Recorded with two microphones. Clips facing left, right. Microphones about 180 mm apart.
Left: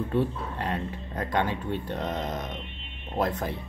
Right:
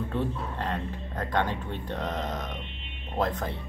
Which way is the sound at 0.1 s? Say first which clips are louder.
Left 3 dB; 10° left (ahead or behind).